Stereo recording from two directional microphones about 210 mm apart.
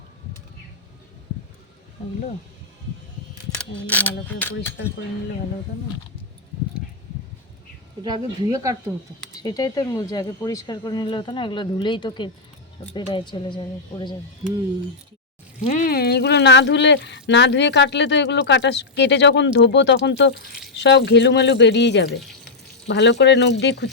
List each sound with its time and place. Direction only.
3.8 s speech: 5° left (ahead or behind)
8.0 s speech: 20° right (ahead or behind)
9.4 s speech: 20° left (ahead or behind)
15.6 s speech: 40° left (ahead or behind)